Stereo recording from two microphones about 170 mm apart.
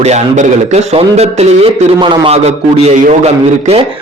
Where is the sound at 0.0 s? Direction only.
40° right (ahead or behind).